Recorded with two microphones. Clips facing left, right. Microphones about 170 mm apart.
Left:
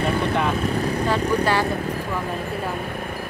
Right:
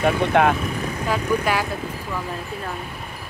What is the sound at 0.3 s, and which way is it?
Speech, 65° right (ahead or behind).